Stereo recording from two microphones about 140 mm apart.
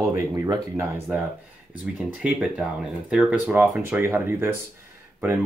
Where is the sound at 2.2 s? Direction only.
5° right (ahead or behind).